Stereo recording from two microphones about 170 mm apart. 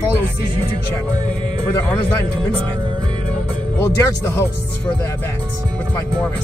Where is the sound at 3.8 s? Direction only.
15° left (ahead or behind).